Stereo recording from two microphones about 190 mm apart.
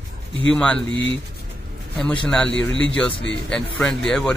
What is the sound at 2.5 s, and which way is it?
Speech, 80° left.